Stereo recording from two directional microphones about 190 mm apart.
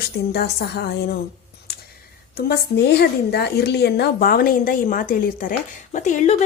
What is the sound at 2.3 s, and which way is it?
A woman's voice, 55° left (ahead or behind).